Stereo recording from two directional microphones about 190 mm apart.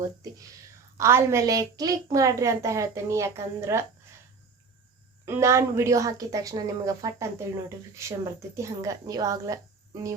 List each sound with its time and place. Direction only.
0.0 s a woman's voice: 20° right (ahead or behind)
5.2 s a woman's voice: 15° right (ahead or behind)